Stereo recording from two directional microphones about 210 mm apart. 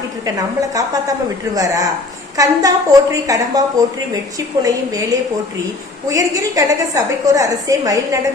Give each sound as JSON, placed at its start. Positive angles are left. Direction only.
{"t": 0.3, "sound": "a woman's voice", "side_deg": -15}
{"t": 6.1, "sound": "a woman's voice", "side_deg": -15}